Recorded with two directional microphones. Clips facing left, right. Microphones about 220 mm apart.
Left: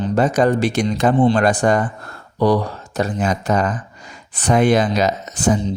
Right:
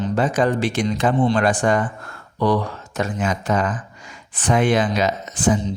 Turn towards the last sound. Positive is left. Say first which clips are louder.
# left 2 dB
turn(degrees=40)  # may be behind; listen again after turning